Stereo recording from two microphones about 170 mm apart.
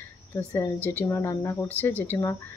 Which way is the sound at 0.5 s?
15° left (ahead or behind).